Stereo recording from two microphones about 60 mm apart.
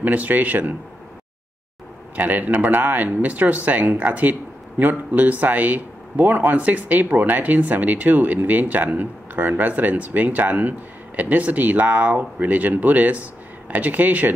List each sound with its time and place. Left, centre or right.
0.0 s speech: right
2.1 s speech: right